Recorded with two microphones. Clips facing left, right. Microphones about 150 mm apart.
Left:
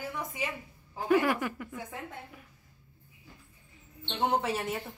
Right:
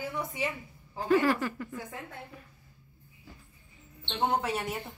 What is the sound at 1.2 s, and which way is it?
Speech, 15° left (ahead or behind).